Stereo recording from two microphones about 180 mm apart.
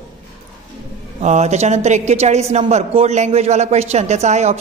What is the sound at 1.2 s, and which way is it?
A woman's voice, 40° right (ahead or behind).